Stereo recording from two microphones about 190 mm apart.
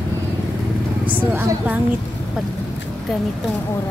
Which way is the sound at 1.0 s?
10° right (ahead or behind).